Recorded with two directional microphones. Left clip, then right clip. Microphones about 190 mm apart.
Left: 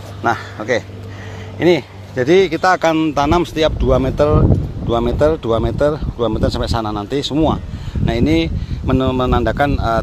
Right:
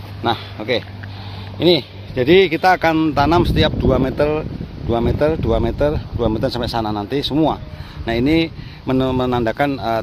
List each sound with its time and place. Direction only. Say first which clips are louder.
0.2 s speech: left 3 dB; centre (ahead or behind)
2.1 s speech: even; 10° right (ahead or behind)